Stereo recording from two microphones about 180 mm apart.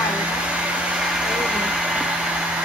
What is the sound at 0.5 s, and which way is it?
Hair dryer, 5° right (ahead or behind).